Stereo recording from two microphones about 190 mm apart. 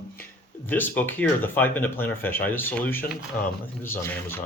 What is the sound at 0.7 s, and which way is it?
Speech, 10° left (ahead or behind).